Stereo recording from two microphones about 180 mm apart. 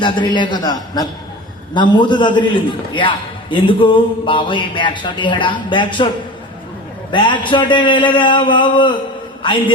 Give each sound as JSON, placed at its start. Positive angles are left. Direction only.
{"t": 0.0, "sound": "a man's voice", "side_deg": 25}
{"t": 7.1, "sound": "a man's voice", "side_deg": 25}